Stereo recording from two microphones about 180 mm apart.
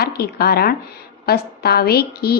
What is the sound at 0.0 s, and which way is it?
A woman's voice, 60° left (ahead or behind).